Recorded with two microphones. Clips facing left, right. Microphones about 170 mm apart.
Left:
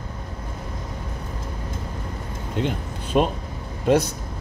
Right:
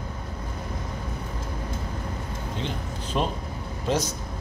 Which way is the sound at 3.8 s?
60° left (ahead or behind).